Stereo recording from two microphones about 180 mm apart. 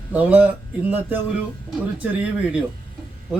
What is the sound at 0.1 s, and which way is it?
Speech, 10° right (ahead or behind).